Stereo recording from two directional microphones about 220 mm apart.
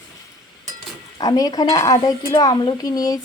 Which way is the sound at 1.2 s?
15° left (ahead or behind).